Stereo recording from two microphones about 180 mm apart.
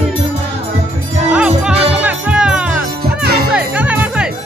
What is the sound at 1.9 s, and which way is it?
Music, 10° right (ahead or behind).